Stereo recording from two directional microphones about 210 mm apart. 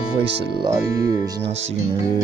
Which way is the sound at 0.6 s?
20° right (ahead or behind).